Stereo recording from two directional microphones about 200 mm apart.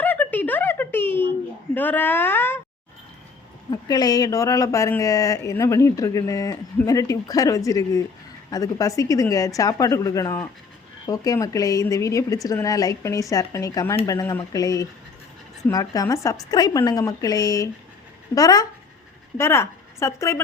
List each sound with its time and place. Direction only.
0.0 s a sound: 10° left (ahead or behind)
1.7 s speech: 10° left (ahead or behind)
3.7 s a woman's voice: 20° left (ahead or behind)